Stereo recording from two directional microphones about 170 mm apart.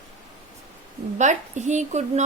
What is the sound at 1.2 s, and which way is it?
Speech, 45° right (ahead or behind).